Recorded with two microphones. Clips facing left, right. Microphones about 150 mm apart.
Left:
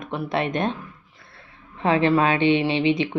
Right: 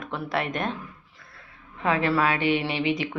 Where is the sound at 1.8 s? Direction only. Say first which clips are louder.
Left 4 dB; 25° left (ahead or behind).